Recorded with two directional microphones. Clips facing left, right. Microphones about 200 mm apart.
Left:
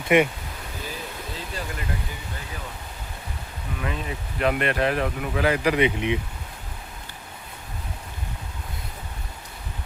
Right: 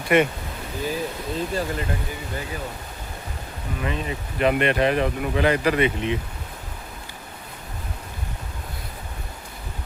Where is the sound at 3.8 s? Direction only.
Centre (ahead or behind); by 6.2 s 15° left (ahead or behind).